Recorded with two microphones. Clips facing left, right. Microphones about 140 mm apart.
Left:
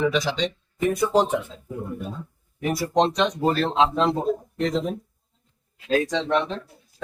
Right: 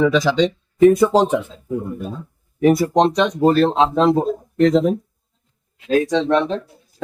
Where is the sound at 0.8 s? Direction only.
90° right.